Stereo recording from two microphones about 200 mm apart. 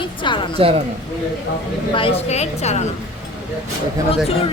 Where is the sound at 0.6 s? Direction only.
25° right (ahead or behind).